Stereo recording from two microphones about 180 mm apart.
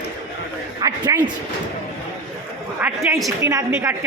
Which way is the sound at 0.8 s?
20° right (ahead or behind).